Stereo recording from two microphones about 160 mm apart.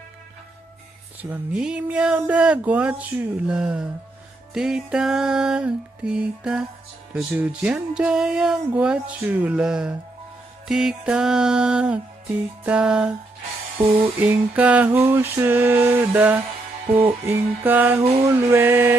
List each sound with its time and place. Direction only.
1.3 s speech: 5° right (ahead or behind)
14.2 s speech: 10° right (ahead or behind)